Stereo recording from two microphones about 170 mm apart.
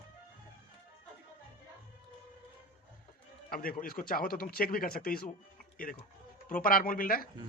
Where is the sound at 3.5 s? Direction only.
55° left (ahead or behind).